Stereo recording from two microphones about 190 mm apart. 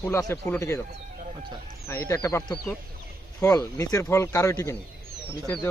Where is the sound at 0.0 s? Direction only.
15° left (ahead or behind).